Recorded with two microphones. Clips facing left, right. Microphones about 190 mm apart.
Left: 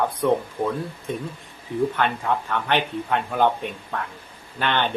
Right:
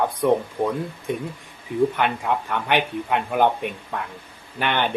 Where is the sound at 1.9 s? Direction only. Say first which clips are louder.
Even; 15° right (ahead or behind).